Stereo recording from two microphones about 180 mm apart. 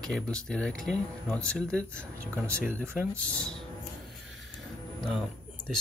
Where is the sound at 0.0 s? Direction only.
5° left (ahead or behind).